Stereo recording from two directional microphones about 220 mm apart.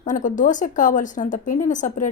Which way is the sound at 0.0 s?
35° left (ahead or behind).